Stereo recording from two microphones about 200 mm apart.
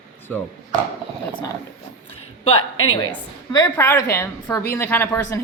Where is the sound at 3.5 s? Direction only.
15° left (ahead or behind).